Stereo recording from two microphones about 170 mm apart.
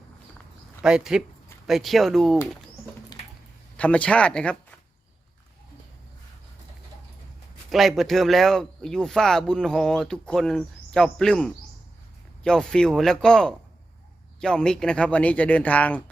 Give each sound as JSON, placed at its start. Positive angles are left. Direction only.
{"t": 0.8, "sound": "speech", "side_deg": -5}
{"t": 3.1, "sound": "a sound", "side_deg": 20}
{"t": 3.8, "sound": "speech", "side_deg": 5}
{"t": 7.7, "sound": "speech", "side_deg": 0}